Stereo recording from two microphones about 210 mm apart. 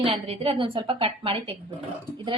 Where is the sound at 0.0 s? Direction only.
25° right (ahead or behind).